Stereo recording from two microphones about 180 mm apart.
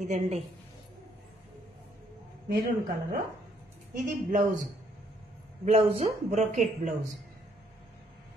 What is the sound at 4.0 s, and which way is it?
Speech, 45° right (ahead or behind).